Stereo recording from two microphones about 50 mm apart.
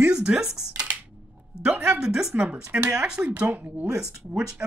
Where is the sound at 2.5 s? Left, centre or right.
Right.